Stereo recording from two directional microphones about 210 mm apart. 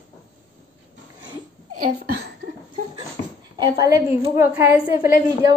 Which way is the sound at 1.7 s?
45° right (ahead or behind).